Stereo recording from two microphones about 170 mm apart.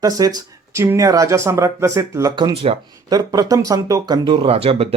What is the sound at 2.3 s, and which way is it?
Speech, 30° right (ahead or behind).